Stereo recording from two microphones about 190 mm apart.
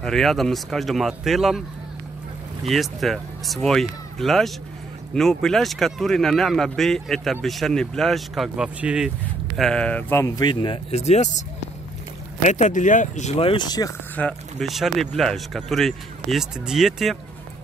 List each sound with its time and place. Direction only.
0.0 s speech: centre (ahead or behind)
2.7 s speech: centre (ahead or behind); by 11.2 s 35° left (ahead or behind)
12.4 s speech: 40° left (ahead or behind); by 13.9 s 20° left (ahead or behind)
14.1 s speech: 5° left (ahead or behind)